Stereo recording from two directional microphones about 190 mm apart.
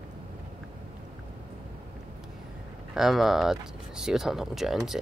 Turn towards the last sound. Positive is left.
turn(degrees=0)  # may be behind; listen again after turning